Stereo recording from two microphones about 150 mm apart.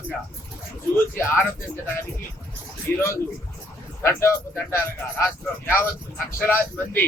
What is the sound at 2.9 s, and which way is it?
Speech, 15° left (ahead or behind).